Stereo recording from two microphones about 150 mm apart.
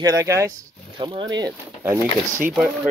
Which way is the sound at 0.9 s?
30° right (ahead or behind).